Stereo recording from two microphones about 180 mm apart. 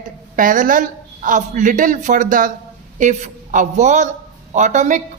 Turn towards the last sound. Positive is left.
turn(degrees=-45)  # may be behind; listen again after turning